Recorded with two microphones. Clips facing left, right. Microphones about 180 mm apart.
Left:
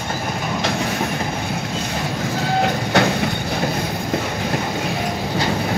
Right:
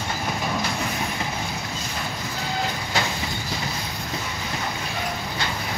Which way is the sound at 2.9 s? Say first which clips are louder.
Left 10 dB; 65° left (ahead or behind).